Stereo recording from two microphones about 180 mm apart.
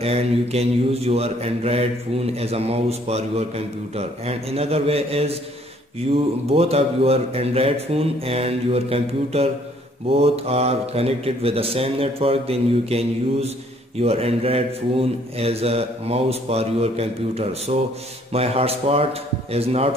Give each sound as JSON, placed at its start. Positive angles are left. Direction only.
{"t": 0.0, "sound": "speech", "side_deg": -35}